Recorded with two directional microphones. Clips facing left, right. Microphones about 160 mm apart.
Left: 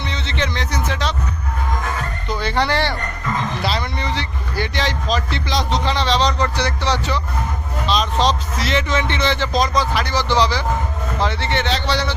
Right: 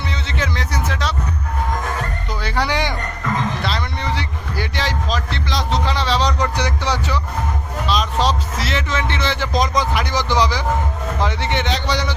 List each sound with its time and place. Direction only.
0.1 s music: 5° right (ahead or behind)
2.3 s music: 5° right (ahead or behind)
3.6 s a sound: centre (ahead or behind)
4.1 s a man's voice: 10° right (ahead or behind)
9.5 s a man's voice: 20° right (ahead or behind)